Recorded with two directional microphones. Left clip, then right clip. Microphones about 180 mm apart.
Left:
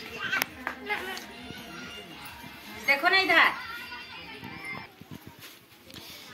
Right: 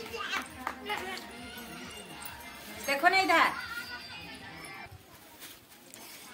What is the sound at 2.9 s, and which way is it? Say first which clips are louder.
Speech: left 3 dB; 15° right (ahead or behind).